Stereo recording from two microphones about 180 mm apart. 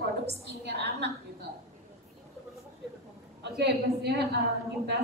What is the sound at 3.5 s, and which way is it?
Speech, 65° right (ahead or behind).